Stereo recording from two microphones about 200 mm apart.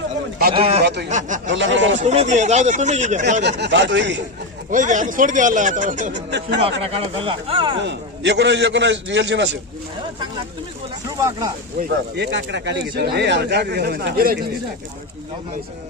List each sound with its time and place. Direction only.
0.6 s speech: 30° right (ahead or behind)
1.5 s speech: 65° right (ahead or behind)
2.0 s speech: 35° right (ahead or behind)
3.4 s speech: 60° right (ahead or behind)
4.6 s speech: 40° right (ahead or behind)
7.8 s speech: 60° right (ahead or behind)
11.1 s speech: 15° right (ahead or behind)
11.9 s speech: 60° right (ahead or behind)